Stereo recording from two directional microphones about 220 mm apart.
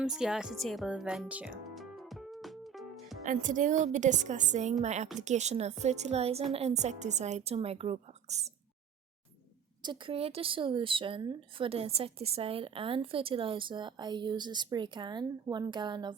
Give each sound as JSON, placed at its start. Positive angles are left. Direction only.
{"t": 0.0, "sound": "music", "side_deg": -5}
{"t": 3.2, "sound": "a woman's voice", "side_deg": -35}
{"t": 9.8, "sound": "a woman's voice", "side_deg": -20}